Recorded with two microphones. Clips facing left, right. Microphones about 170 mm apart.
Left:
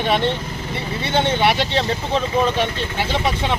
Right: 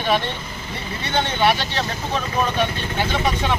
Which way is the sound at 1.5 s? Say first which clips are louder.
Left 5 dB; 25° left (ahead or behind).